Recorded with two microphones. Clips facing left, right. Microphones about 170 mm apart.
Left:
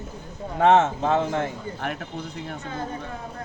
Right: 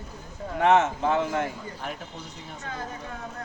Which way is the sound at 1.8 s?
65° left (ahead or behind).